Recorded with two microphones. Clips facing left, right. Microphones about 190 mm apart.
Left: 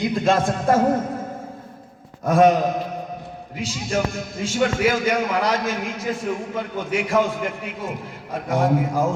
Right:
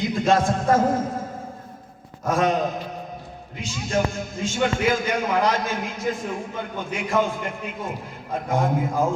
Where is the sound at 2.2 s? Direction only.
65° left (ahead or behind).